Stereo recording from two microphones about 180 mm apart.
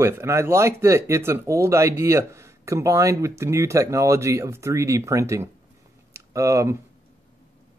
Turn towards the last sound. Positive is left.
turn(degrees=-15)  # may be behind; listen again after turning